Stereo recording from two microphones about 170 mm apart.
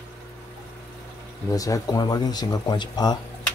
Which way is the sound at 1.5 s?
20° left (ahead or behind).